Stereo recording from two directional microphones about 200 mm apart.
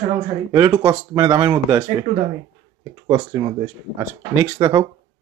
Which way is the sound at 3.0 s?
20° right (ahead or behind).